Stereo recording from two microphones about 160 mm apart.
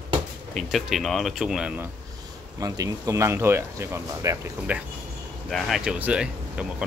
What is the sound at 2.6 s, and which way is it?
Speech, 20° right (ahead or behind).